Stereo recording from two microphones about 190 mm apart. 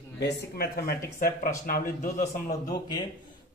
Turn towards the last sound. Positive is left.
turn(degrees=20)  # may be behind; listen again after turning